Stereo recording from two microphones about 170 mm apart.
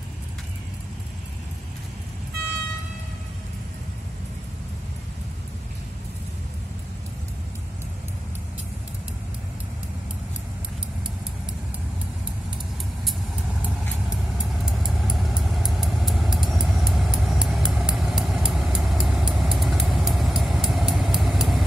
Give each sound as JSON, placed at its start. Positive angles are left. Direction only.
{"t": 14.1, "sound": "vehicle", "side_deg": 0}